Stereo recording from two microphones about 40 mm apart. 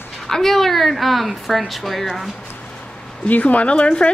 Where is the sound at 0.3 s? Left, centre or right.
Centre.